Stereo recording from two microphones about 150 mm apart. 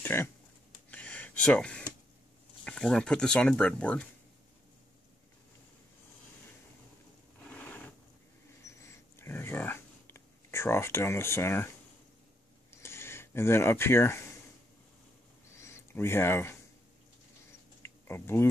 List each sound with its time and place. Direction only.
0.0 s speech: 15° left (ahead or behind)
0.8 s gasp: 10° left (ahead or behind)
2.6 s speech: 5° left (ahead or behind)
7.4 s zipper: 10° left (ahead or behind)
8.6 s a sound: 20° left (ahead or behind)
12.8 s speech: 15° left (ahead or behind)
15.5 s a sound: 20° left (ahead or behind)
17.8 s typing: 15° left (ahead or behind)